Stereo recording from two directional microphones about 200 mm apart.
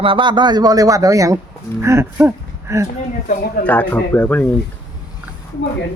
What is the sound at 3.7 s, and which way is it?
Speech, 10° left (ahead or behind).